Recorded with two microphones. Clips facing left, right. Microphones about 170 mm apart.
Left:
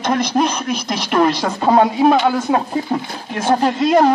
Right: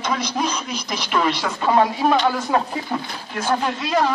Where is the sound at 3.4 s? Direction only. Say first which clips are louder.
Left 6 dB; 30° left (ahead or behind).